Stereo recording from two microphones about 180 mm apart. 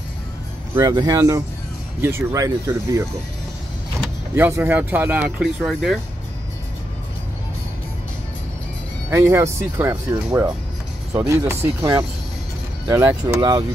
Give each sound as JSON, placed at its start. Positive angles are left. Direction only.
{"t": 0.7, "sound": "speech", "side_deg": -20}
{"t": 4.4, "sound": "speech", "side_deg": -15}
{"t": 9.1, "sound": "speech", "side_deg": -15}